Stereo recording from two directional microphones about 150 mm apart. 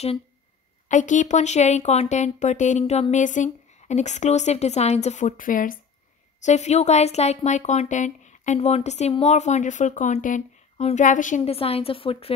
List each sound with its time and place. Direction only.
0.8 s speech: 55° left (ahead or behind)
6.4 s speech: 50° left (ahead or behind)
11.4 s a woman's voice: 40° left (ahead or behind)